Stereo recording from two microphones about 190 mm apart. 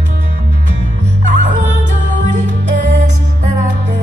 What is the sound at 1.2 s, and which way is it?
Music, 40° right (ahead or behind).